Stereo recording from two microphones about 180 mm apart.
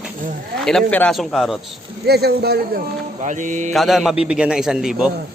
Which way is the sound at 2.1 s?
60° right (ahead or behind).